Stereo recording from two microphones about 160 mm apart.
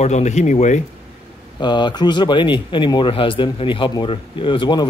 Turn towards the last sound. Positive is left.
turn(degrees=30)  # may be behind; listen again after turning